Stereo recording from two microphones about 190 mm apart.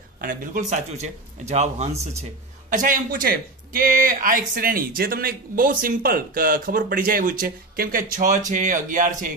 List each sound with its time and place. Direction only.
0.2 s speech: 45° right (ahead or behind)